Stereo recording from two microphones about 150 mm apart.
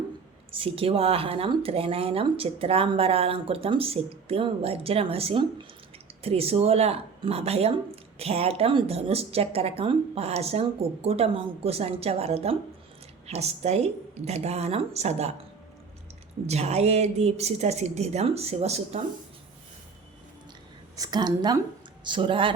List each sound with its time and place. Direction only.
0.5 s speech: 40° right (ahead or behind)
16.5 s speech: 45° right (ahead or behind)
20.9 s a woman's voice: 25° right (ahead or behind)